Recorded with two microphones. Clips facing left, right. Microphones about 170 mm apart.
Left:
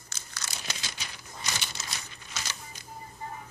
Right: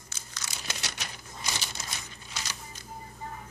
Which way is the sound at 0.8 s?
75° right (ahead or behind).